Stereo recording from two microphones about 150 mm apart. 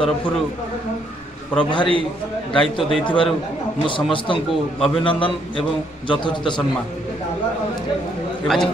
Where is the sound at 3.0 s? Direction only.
35° left (ahead or behind).